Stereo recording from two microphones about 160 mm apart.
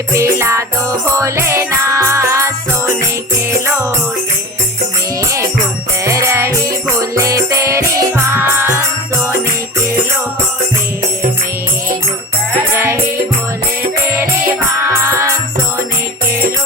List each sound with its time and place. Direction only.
0.1 s music: 15° right (ahead or behind)
6.1 s music: 20° right (ahead or behind)
12.7 s music: 15° right (ahead or behind)
14.8 s music: 15° right (ahead or behind)